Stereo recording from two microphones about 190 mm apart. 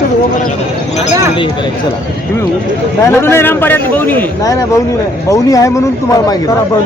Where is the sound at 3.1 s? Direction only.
15° left (ahead or behind).